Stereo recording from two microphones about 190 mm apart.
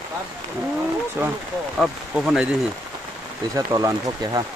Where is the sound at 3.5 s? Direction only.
20° right (ahead or behind).